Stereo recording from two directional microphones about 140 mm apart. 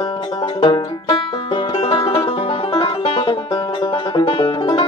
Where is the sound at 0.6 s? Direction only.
35° left (ahead or behind).